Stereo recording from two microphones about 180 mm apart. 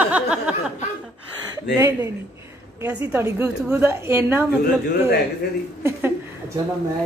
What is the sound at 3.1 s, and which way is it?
A woman's voice, 10° right (ahead or behind).